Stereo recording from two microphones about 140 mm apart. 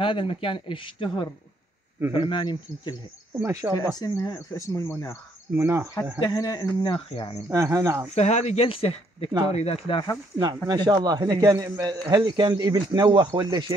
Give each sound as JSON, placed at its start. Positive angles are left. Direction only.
{"t": 0.0, "sound": "speech", "side_deg": 40}
{"t": 3.3, "sound": "a man's voice", "side_deg": -20}
{"t": 4.0, "sound": "speech", "side_deg": 25}
{"t": 5.6, "sound": "a man's voice", "side_deg": -20}
{"t": 6.2, "sound": "speech", "side_deg": 25}
{"t": 6.8, "sound": "speech", "side_deg": 40}
{"t": 7.4, "sound": "a man's voice", "side_deg": -20}
{"t": 8.1, "sound": "speech", "side_deg": 55}
{"t": 10.4, "sound": "a man's voice", "side_deg": -30}